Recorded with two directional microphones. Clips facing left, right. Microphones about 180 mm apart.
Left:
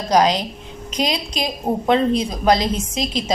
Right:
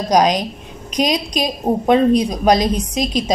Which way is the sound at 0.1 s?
15° right (ahead or behind).